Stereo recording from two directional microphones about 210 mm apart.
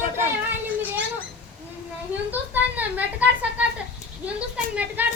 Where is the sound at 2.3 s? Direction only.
10° right (ahead or behind).